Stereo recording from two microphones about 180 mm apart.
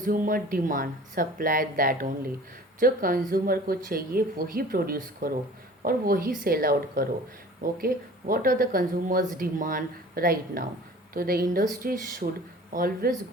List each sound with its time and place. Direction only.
0.0 s speech: 50° right (ahead or behind)